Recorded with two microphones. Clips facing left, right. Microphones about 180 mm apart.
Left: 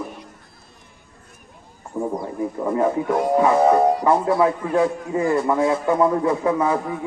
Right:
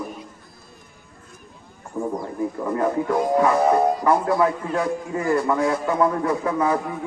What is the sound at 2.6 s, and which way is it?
A man's voice, 15° left (ahead or behind).